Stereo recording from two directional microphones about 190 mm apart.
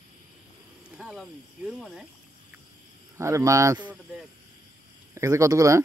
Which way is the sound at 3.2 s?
15° right (ahead or behind).